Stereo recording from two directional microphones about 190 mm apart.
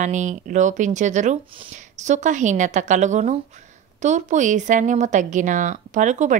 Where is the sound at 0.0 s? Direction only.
40° right (ahead or behind).